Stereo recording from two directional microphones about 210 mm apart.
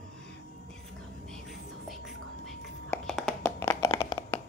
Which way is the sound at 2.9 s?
5° left (ahead or behind).